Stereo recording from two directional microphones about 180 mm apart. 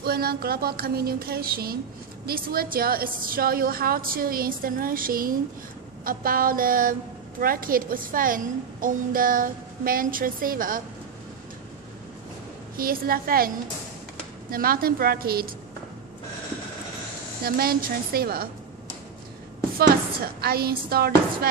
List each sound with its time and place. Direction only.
0.0 s a woman's voice: 60° right (ahead or behind)
12.7 s speech: 55° right (ahead or behind)
14.5 s speech: 55° right (ahead or behind)
17.4 s speech: 60° right (ahead or behind)
20.2 s speech: 55° right (ahead or behind)